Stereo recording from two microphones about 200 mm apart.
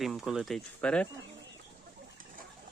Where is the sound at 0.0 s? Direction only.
Centre (ahead or behind).